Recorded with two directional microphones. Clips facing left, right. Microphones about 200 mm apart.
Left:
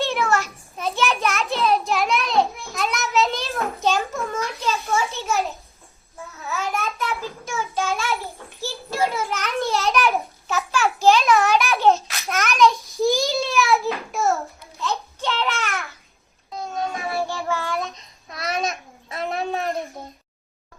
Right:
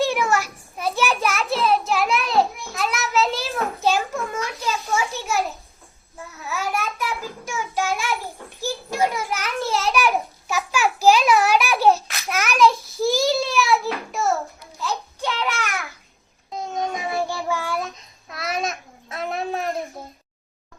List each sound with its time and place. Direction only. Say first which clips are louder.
0.0 s a sound: right 1 dB; 10° right (ahead or behind)
6.7 s child singing: even; 10° right (ahead or behind)
8.6 s a sound: right 1 dB; 10° right (ahead or behind)
14.8 s babbling: left 1 dB; 10° right (ahead or behind)
16.5 s child singing: right 1 dB; 20° right (ahead or behind)
17.7 s babbling: even; centre (ahead or behind)